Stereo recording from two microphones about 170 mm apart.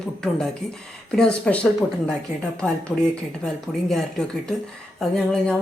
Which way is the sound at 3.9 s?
Centre (ahead or behind).